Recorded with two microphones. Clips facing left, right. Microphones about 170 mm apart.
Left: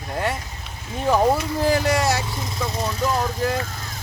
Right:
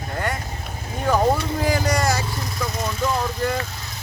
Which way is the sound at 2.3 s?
25° left (ahead or behind).